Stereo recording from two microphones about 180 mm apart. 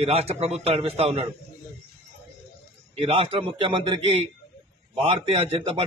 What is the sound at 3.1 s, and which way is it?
Speech, 30° right (ahead or behind).